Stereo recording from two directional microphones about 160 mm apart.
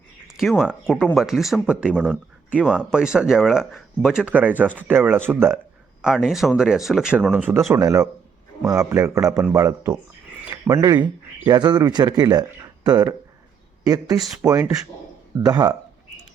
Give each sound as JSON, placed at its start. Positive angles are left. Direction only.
{"t": 0.3, "sound": "speech", "side_deg": -5}